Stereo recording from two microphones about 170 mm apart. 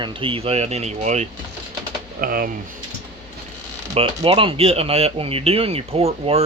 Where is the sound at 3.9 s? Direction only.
30° right (ahead or behind).